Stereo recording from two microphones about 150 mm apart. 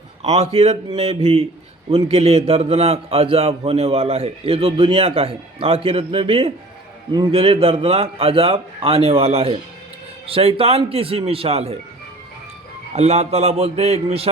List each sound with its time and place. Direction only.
0.2 s a man's voice: 45° right (ahead or behind)
13.0 s a man's voice: 45° right (ahead or behind)